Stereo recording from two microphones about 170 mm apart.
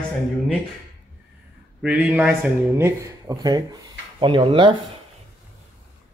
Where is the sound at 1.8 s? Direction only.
5° right (ahead or behind); by 4.8 s 30° right (ahead or behind).